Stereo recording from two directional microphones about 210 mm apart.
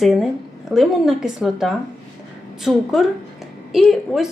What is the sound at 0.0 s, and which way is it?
A woman's voice, centre (ahead or behind).